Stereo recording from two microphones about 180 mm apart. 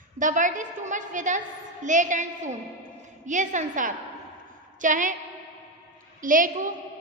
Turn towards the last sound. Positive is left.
turn(degrees=-45)  # may be behind; listen again after turning